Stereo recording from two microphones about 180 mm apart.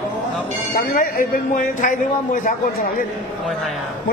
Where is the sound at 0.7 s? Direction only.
50° left (ahead or behind).